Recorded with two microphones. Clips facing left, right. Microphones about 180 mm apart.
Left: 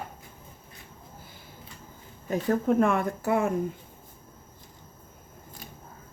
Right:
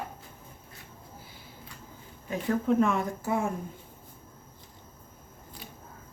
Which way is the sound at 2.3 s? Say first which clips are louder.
Left 2 dB; 40° left (ahead or behind).